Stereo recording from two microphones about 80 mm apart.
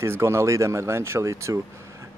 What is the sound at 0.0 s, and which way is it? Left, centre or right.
Speech, right.